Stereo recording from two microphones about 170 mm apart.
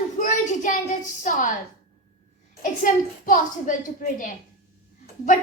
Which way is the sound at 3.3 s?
55° left (ahead or behind).